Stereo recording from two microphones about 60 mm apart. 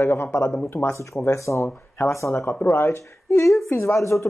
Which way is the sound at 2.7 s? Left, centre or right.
Left.